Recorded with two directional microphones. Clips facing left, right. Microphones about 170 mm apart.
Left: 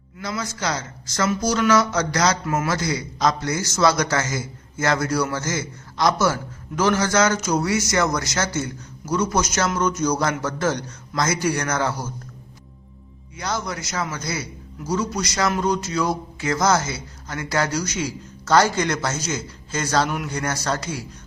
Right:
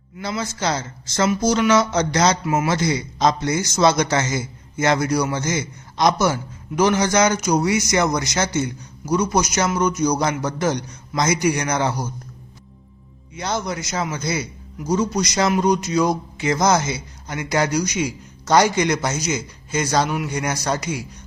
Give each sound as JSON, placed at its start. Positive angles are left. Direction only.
{"t": 0.2, "sound": "a woman's voice", "side_deg": -30}
{"t": 13.3, "sound": "a woman's voice", "side_deg": -20}